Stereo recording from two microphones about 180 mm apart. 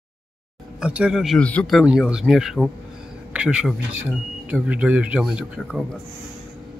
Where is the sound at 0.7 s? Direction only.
5° right (ahead or behind).